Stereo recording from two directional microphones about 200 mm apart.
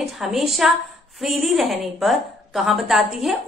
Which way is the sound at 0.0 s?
Centre (ahead or behind).